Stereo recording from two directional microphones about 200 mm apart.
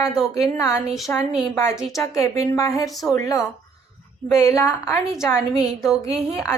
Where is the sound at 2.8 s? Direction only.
Centre (ahead or behind).